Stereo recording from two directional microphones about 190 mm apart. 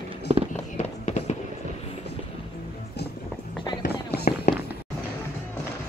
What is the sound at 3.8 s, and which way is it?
Fireworks, 55° left (ahead or behind).